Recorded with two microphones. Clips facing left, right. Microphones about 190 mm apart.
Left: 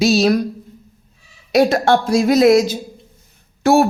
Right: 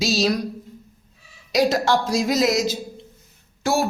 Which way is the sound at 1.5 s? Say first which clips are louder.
Left 5 dB; 55° left (ahead or behind).